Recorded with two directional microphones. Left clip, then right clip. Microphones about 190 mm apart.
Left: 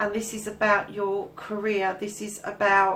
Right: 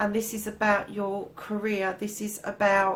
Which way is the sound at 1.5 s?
40° right (ahead or behind).